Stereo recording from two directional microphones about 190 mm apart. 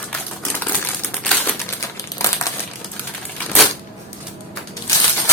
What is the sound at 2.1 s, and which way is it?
Crumpling, 15° left (ahead or behind).